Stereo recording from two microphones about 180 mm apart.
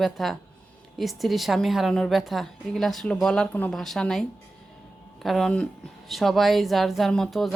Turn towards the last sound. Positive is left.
turn(degrees=0)  # may be behind; listen again after turning